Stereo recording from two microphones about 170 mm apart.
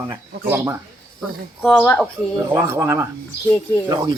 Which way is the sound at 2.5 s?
15° right (ahead or behind).